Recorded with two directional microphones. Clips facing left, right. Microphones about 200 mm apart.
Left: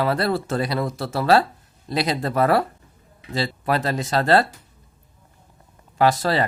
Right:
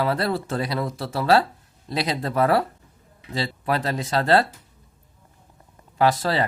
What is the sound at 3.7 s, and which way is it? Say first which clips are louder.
Speech: left 1 dB; 45° left (ahead or behind).